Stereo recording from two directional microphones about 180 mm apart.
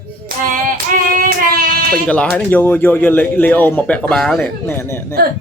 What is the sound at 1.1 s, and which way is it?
Child singing, 50° right (ahead or behind).